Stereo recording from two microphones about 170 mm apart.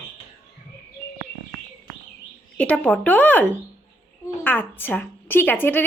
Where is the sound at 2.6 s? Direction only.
5° left (ahead or behind).